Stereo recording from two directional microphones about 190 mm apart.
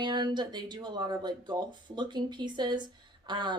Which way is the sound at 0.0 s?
25° right (ahead or behind).